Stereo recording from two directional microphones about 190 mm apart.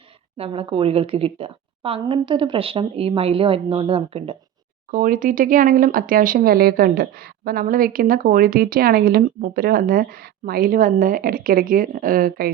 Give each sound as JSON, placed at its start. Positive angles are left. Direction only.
{"t": 0.3, "sound": "a woman's voice", "side_deg": -30}
{"t": 4.9, "sound": "speech", "side_deg": -45}